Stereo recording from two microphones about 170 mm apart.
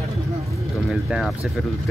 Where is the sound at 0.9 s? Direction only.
Centre (ahead or behind).